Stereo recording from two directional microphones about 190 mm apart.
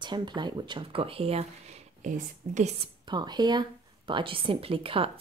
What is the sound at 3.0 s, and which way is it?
Speech, 20° right (ahead or behind).